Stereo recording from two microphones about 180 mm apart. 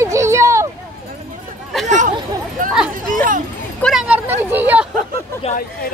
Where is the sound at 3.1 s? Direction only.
45° right (ahead or behind).